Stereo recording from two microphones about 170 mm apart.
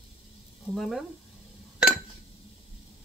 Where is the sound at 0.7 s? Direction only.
Centre (ahead or behind).